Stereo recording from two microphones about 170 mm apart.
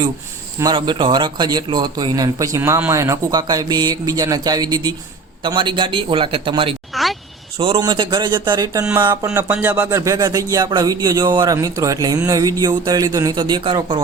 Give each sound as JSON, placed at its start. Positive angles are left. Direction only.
{"t": 0.6, "sound": "a man's voice", "side_deg": -25}
{"t": 6.9, "sound": "a sound", "side_deg": 0}
{"t": 7.6, "sound": "a man's voice", "side_deg": -30}
{"t": 10.0, "sound": "a man's voice", "side_deg": -20}